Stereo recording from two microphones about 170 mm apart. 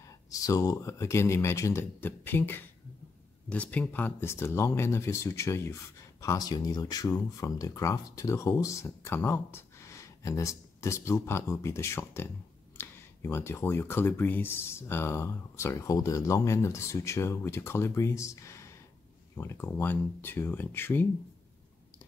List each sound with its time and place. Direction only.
0.3 s speech: 20° left (ahead or behind)